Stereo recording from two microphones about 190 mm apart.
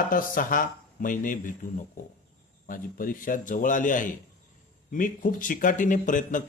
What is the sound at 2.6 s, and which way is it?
Speech, 45° left (ahead or behind).